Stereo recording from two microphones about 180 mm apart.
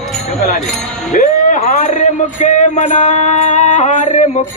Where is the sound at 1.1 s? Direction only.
45° left (ahead or behind).